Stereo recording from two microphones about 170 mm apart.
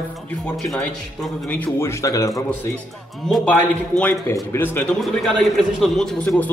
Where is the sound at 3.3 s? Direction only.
10° left (ahead or behind).